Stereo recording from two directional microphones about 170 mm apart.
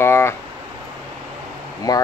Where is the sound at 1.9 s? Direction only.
20° left (ahead or behind).